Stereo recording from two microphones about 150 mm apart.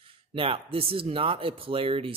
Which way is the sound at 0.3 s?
40° right (ahead or behind).